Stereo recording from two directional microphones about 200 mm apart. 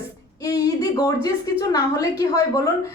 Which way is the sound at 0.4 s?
15° left (ahead or behind).